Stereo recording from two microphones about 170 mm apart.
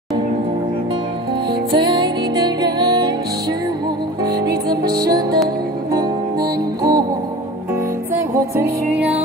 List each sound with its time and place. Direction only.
1.9 s music: 25° right (ahead or behind)
4.6 s music: 25° right (ahead or behind)
6.8 s music: 25° right (ahead or behind)
8.1 s music: 10° right (ahead or behind)